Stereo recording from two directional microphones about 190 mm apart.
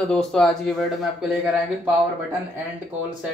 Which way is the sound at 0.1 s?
5° left (ahead or behind).